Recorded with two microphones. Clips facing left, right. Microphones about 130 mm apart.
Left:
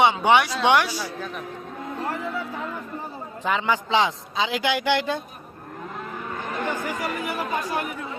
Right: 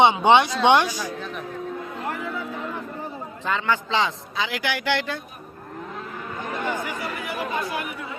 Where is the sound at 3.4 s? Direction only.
15° left (ahead or behind).